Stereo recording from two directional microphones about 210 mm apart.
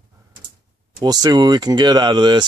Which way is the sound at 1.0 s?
20° right (ahead or behind).